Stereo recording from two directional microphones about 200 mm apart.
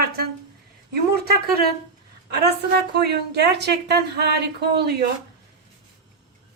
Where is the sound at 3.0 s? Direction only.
55° right (ahead or behind).